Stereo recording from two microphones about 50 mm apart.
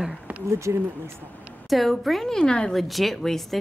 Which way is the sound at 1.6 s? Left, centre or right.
Centre.